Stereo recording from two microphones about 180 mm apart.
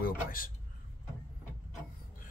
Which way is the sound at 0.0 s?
50° left (ahead or behind).